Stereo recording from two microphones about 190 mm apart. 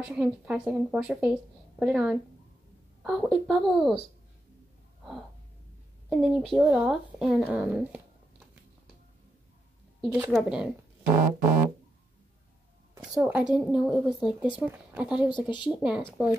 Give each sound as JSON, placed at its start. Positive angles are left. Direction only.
{"t": 0.0, "sound": "speech", "side_deg": -5}
{"t": 6.0, "sound": "speech", "side_deg": 0}
{"t": 10.0, "sound": "a woman's voice", "side_deg": -15}
{"t": 11.1, "sound": "a sound", "side_deg": -45}
{"t": 13.1, "sound": "speech", "side_deg": -5}